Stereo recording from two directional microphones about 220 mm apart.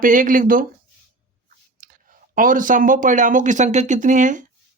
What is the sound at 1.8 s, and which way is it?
Speech, 40° right (ahead or behind).